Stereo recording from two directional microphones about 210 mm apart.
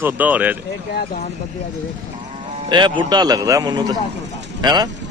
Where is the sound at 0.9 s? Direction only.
45° left (ahead or behind).